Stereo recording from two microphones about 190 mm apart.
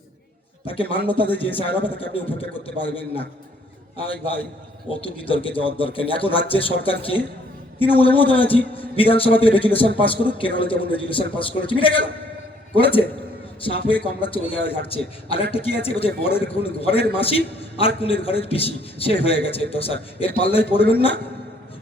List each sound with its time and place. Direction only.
0.7 s a man's voice: 30° left (ahead or behind)
4.9 s a man's voice: 30° left (ahead or behind)